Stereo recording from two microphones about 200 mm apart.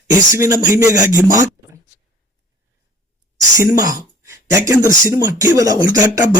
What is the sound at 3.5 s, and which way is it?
Speech, 15° right (ahead or behind).